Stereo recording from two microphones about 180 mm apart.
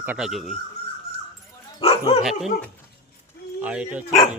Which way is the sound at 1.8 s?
35° left (ahead or behind).